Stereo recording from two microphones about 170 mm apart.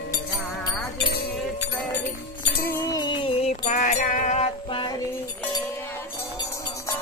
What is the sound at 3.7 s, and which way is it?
Music, 45° left (ahead or behind).